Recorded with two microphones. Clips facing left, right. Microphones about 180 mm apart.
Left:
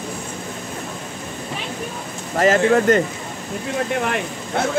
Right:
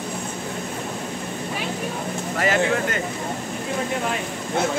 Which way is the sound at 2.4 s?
40° left (ahead or behind).